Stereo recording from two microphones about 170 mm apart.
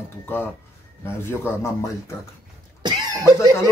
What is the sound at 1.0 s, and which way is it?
Speech, 15° left (ahead or behind).